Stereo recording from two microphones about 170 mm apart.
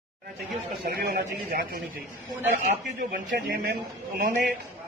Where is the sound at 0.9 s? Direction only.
65° right (ahead or behind).